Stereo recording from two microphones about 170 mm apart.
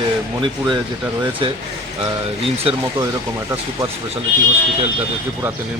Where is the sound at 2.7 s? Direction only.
35° right (ahead or behind).